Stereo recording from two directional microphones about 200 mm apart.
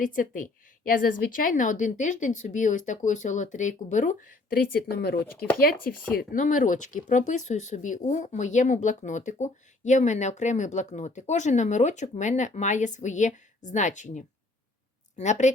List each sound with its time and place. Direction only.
0.0 s a woman's voice: 40° left (ahead or behind)